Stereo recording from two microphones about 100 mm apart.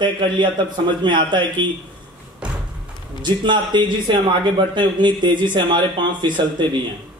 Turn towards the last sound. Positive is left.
turn(degrees=-50)  # may be behind; listen again after turning